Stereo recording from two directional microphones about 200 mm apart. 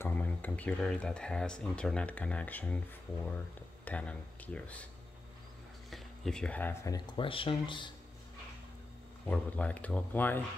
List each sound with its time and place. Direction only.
0.0 s speech: 10° left (ahead or behind)
3.8 s speech: 5° left (ahead or behind)
5.9 s speech: centre (ahead or behind); by 7.9 s 25° left (ahead or behind)
9.3 s speech: 5° left (ahead or behind)